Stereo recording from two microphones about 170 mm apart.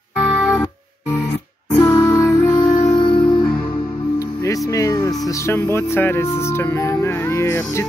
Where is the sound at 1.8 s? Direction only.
15° left (ahead or behind).